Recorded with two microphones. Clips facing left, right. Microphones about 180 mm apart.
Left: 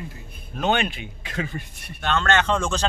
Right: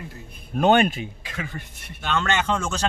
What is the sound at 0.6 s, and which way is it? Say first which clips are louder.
Speech: right 5 dB; 50° right (ahead or behind).